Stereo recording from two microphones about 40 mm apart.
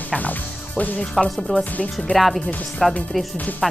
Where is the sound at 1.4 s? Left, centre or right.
Left.